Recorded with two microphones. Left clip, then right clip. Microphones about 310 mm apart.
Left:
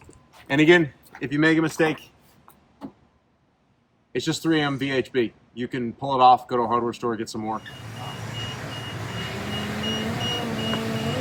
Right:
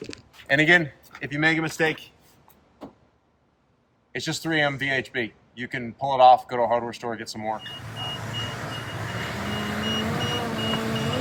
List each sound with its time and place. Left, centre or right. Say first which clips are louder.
0.7 s speech: left 1 dB; centre
4.1 s speech: left 3 dB; centre
8.3 s vehicle: right 2 dB; centre